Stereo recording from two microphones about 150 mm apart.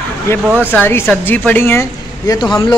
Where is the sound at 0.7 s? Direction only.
15° left (ahead or behind).